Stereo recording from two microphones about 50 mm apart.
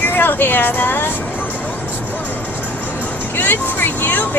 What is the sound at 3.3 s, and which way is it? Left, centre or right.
Speech, left.